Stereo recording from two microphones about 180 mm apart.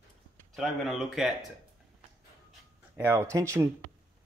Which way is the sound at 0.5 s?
Centre (ahead or behind).